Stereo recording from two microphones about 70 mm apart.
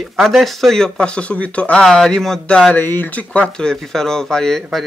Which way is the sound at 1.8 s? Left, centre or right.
Centre.